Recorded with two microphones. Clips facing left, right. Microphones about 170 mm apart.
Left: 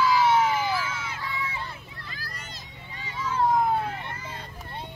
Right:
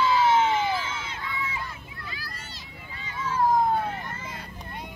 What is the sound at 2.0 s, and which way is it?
Children playing, 45° left (ahead or behind).